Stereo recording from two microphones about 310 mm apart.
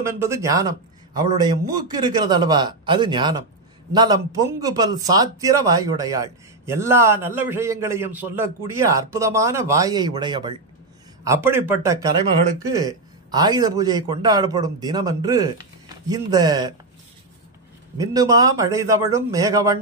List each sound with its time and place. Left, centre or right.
0.0 s a man's voice: centre
17.9 s a man's voice: centre